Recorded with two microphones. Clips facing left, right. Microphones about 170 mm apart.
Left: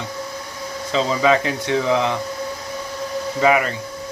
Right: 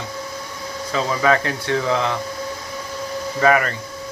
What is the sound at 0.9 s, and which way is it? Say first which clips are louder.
Speech: left 2 dB; 20° left (ahead or behind).